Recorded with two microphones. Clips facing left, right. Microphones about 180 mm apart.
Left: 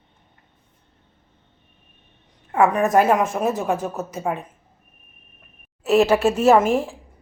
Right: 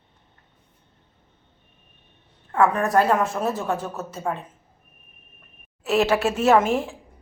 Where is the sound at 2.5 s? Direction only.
20° left (ahead or behind).